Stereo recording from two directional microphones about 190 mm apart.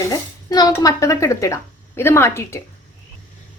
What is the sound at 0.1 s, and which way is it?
Speech, 20° left (ahead or behind).